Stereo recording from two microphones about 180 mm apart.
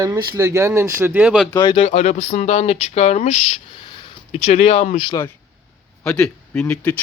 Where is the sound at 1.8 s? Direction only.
40° left (ahead or behind).